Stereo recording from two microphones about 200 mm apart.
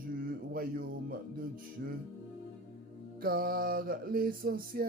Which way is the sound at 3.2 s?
50° right (ahead or behind).